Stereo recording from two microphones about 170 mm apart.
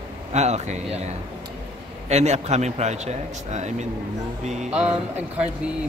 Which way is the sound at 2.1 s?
40° right (ahead or behind).